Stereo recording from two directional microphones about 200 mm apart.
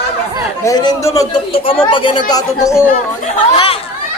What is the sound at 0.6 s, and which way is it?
Speech, 20° left (ahead or behind).